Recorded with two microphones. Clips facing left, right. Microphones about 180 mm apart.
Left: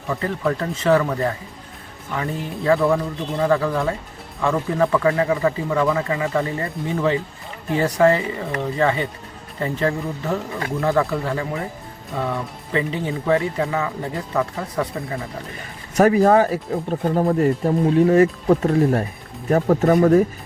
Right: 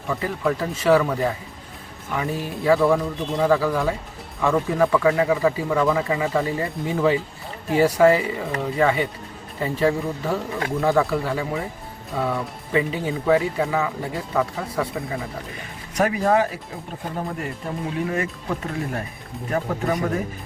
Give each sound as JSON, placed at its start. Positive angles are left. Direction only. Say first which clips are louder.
{"t": 0.1, "sound": "speech", "louder": "left 1 dB", "side_deg": -5}
{"t": 2.6, "sound": "speech", "louder": "even", "side_deg": -5}
{"t": 16.0, "sound": "speech", "louder": "left 5 dB", "side_deg": 40}